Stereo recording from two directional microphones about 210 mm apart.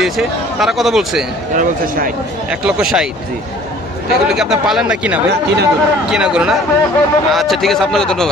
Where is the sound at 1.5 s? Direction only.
40° right (ahead or behind).